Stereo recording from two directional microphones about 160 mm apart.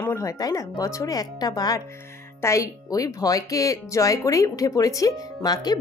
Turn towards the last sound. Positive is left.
turn(degrees=25)  # may be behind; listen again after turning